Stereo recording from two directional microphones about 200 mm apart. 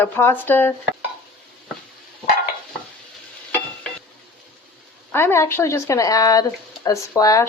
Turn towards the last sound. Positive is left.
turn(degrees=15)  # may be behind; listen again after turning